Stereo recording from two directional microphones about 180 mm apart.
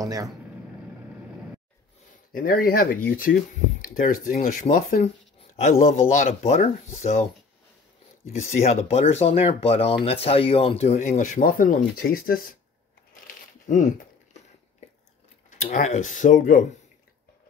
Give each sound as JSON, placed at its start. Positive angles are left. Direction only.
{"t": 0.0, "sound": "speech", "side_deg": -20}
{"t": 2.3, "sound": "speech", "side_deg": 50}
{"t": 8.5, "sound": "speech", "side_deg": 40}
{"t": 13.7, "sound": "a sound", "side_deg": 40}
{"t": 15.5, "sound": "speech", "side_deg": 45}